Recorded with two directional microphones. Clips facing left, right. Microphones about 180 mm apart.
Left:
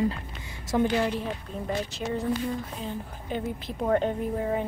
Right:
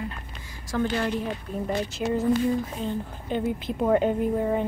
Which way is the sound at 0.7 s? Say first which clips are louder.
Left 2 dB; 15° left (ahead or behind).